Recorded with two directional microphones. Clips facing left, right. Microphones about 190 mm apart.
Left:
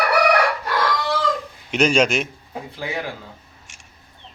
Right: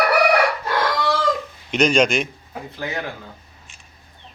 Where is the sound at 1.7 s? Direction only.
5° left (ahead or behind).